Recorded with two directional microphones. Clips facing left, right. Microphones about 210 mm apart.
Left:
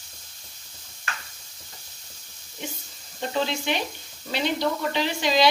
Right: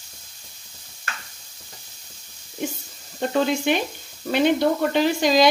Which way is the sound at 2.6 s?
50° right (ahead or behind).